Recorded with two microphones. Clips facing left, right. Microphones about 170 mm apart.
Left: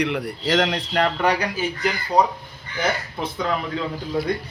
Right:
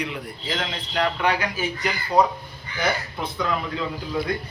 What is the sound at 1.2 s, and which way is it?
Speech, 40° left (ahead or behind).